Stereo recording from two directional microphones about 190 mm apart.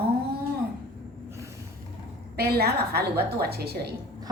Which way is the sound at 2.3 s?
55° right (ahead or behind).